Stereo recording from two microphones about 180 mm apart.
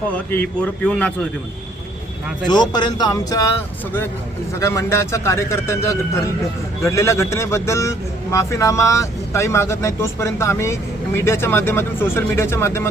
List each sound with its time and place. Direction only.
0.3 s a man's voice: 10° left (ahead or behind)
2.5 s speech: 25° left (ahead or behind)
4.6 s a man's voice: 15° left (ahead or behind)